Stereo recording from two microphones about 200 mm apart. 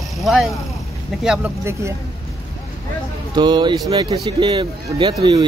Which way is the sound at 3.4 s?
20° right (ahead or behind).